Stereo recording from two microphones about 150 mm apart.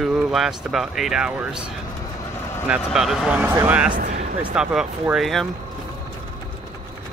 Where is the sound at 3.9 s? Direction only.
60° right (ahead or behind).